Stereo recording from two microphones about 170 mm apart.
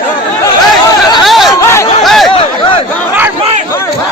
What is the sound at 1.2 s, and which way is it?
Chatter, centre (ahead or behind).